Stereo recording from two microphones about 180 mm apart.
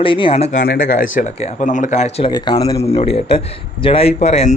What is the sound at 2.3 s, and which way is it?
Speech, 25° left (ahead or behind).